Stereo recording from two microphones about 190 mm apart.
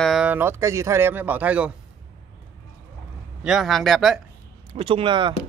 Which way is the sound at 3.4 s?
Centre (ahead or behind).